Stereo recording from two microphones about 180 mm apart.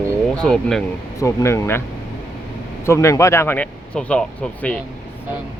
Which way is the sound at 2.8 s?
15° left (ahead or behind).